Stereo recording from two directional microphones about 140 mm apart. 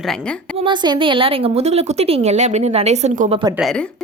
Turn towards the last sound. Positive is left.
turn(degrees=-55)  # may be behind; listen again after turning